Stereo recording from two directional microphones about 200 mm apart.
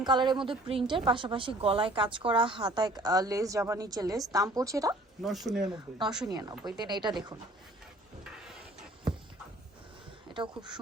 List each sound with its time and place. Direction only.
0.0 s a woman's voice: 20° right (ahead or behind)
5.2 s speech: centre (ahead or behind)
6.2 s a woman's voice: 20° right (ahead or behind)
8.2 s a sound: 5° right (ahead or behind)
10.3 s a woman's voice: 25° right (ahead or behind)